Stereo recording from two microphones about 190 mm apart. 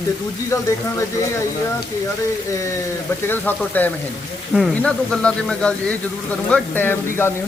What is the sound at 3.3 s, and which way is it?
Speech, 10° left (ahead or behind).